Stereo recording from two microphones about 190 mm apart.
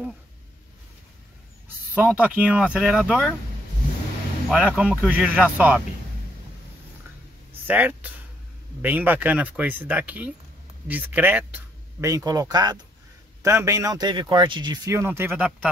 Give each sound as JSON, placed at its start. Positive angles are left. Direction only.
{"t": 2.0, "sound": "speech", "side_deg": -10}
{"t": 4.5, "sound": "speech", "side_deg": -5}
{"t": 7.6, "sound": "speech", "side_deg": -10}